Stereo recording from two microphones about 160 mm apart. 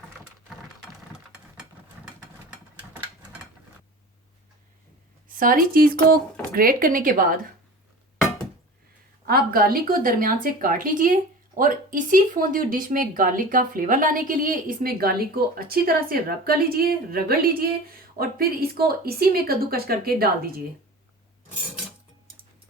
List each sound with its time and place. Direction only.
5.3 s speech: 60° right (ahead or behind)
9.2 s speech: 70° right (ahead or behind)